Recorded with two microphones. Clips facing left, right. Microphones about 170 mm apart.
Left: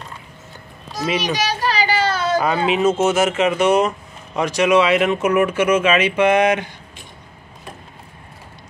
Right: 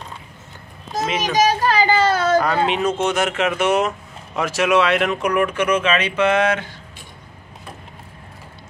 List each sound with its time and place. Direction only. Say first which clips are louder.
0.9 s a child's voice: right 2 dB; 45° right (ahead or behind)
2.3 s speech: even; 5° left (ahead or behind)